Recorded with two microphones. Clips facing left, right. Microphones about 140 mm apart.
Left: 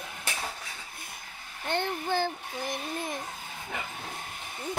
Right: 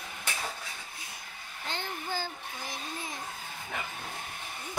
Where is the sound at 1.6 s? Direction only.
60° left (ahead or behind).